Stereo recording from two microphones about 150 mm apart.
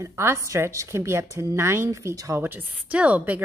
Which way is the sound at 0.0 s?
15° right (ahead or behind).